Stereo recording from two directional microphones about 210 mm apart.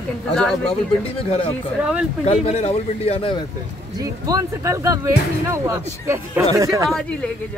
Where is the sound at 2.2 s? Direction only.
30° left (ahead or behind).